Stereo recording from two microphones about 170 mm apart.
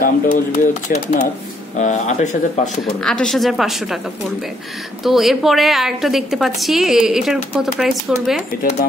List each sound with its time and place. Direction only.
0.0 s speech: 50° left (ahead or behind)
3.0 s a woman's voice: 5° left (ahead or behind)
5.0 s a woman's voice: centre (ahead or behind)